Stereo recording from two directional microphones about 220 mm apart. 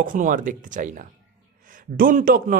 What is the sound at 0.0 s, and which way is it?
Speech, 35° right (ahead or behind).